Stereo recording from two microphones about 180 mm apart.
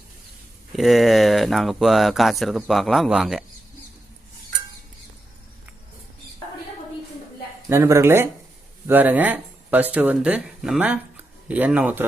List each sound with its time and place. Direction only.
0.8 s speech: centre (ahead or behind)
7.7 s speech: 15° right (ahead or behind)